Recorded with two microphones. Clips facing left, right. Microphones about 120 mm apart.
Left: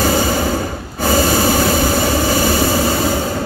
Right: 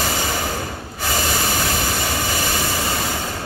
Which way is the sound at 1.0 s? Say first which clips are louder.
Left 9 dB; 40° left (ahead or behind).